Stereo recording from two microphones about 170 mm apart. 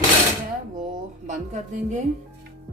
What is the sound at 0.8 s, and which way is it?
Speech, 50° right (ahead or behind).